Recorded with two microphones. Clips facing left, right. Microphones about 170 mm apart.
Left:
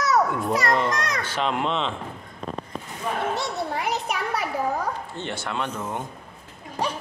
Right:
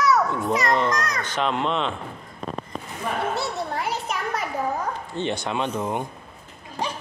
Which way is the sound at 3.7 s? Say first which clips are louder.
Left 1 dB; 15° left (ahead or behind).